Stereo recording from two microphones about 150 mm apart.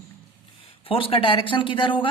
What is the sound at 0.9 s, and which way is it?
Speech, 35° left (ahead or behind).